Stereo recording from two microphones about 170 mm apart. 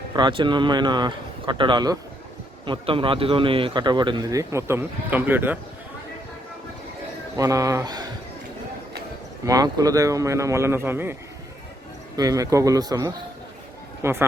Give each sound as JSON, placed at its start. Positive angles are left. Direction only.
{"t": 0.2, "sound": "speech", "side_deg": -30}
{"t": 7.3, "sound": "speech", "side_deg": -20}
{"t": 9.5, "sound": "speech", "side_deg": -20}